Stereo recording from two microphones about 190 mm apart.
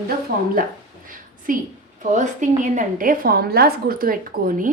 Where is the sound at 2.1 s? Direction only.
40° right (ahead or behind).